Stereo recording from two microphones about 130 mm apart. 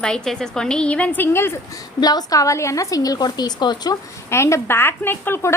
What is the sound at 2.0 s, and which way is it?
A woman's voice, 30° left (ahead or behind).